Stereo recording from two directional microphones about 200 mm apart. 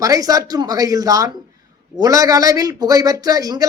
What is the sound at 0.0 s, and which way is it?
Speech, 15° right (ahead or behind).